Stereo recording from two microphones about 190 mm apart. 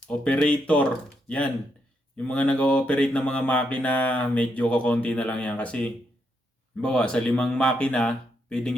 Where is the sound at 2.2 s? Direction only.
5° left (ahead or behind).